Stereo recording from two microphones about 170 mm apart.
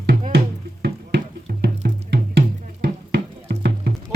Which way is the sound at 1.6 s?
75° right (ahead or behind).